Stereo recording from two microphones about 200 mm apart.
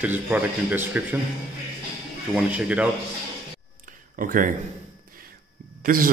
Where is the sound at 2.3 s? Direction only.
5° right (ahead or behind).